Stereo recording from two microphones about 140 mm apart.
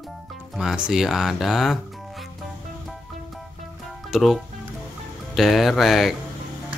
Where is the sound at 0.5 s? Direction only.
5° right (ahead or behind).